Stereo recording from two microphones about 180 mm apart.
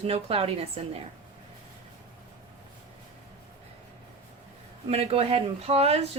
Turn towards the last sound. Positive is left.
turn(degrees=-35)  # may be behind; listen again after turning